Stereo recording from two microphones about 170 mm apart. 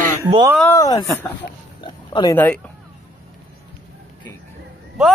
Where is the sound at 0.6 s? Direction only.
15° left (ahead or behind).